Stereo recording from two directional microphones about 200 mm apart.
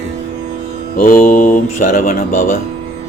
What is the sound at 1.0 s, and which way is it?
Speech, 40° left (ahead or behind).